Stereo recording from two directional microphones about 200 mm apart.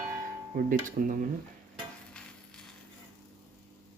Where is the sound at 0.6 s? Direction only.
45° right (ahead or behind).